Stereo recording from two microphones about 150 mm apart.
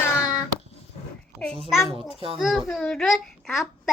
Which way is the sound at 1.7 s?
Centre (ahead or behind).